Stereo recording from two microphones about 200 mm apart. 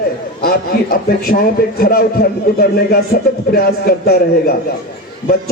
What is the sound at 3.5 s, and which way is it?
A man's voice, 50° left (ahead or behind).